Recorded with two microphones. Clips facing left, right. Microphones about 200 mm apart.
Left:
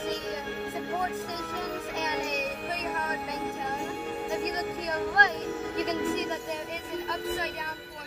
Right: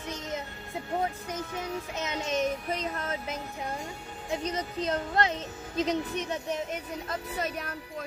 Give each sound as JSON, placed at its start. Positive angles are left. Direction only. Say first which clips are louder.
{"t": 4.8, "sound": "speech", "louder": "right 2 dB", "side_deg": -25}